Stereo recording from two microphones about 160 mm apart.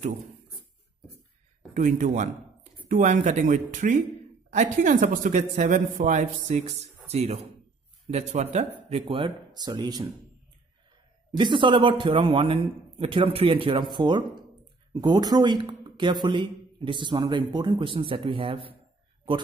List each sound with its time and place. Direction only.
1.7 s a man's voice: 50° right (ahead or behind); by 10.0 s 25° right (ahead or behind)
11.3 s a man's voice: 30° right (ahead or behind)